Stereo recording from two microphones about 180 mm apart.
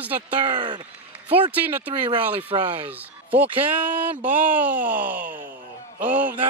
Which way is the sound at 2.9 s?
10° right (ahead or behind).